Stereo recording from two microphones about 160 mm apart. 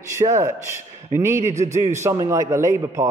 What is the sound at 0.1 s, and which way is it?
A man's voice, 20° right (ahead or behind).